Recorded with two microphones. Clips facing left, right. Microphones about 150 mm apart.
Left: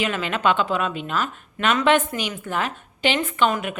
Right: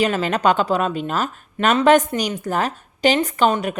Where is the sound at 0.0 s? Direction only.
40° right (ahead or behind).